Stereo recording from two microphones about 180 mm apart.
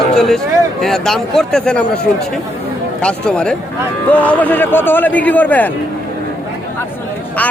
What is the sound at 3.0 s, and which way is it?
A man's voice, 5° left (ahead or behind).